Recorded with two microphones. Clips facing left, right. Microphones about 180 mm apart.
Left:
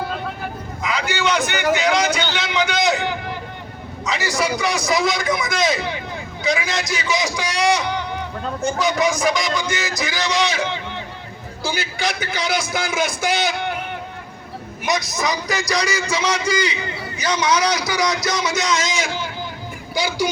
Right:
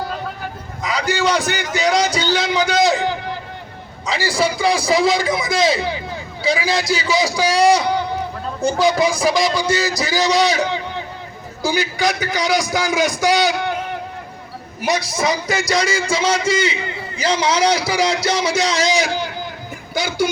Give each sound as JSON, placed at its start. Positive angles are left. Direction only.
{"t": 0.8, "sound": "a man's voice", "side_deg": -35}
{"t": 14.8, "sound": "a man's voice", "side_deg": -30}
{"t": 19.9, "sound": "speech", "side_deg": -50}